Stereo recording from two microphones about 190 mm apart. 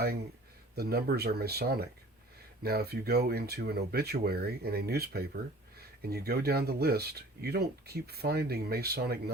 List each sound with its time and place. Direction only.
0.8 s speech: 55° right (ahead or behind)